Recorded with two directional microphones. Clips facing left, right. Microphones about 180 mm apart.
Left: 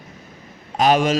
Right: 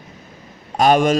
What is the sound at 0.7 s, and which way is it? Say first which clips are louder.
Speech: right 2 dB; 50° right (ahead or behind).